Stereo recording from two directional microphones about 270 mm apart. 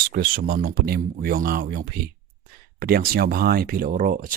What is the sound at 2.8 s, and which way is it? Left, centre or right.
Speech, right.